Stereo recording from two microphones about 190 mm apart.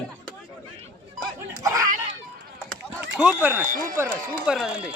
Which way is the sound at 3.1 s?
5° right (ahead or behind).